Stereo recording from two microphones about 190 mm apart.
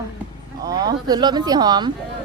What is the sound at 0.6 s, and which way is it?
Speech, 20° right (ahead or behind).